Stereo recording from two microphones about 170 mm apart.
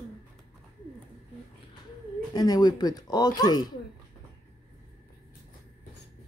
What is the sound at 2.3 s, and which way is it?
Speech, 25° left (ahead or behind).